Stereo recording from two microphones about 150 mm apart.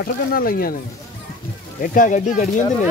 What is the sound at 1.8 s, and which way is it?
Speech, 65° left (ahead or behind).